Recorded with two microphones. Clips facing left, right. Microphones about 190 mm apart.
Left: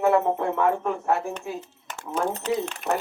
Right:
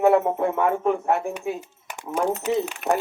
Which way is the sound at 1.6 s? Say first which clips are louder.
Right 1 dB; 10° right (ahead or behind).